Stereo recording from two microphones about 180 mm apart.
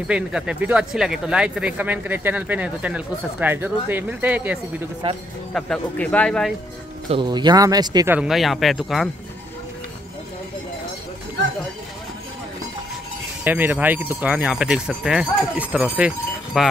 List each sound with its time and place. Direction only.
0.1 s speech: 5° right (ahead or behind)
5.5 s speech: 5° left (ahead or behind)
7.1 s a man's voice: 25° right (ahead or behind)
8.1 s speech: 5° right (ahead or behind)
13.4 s speech: 10° right (ahead or behind)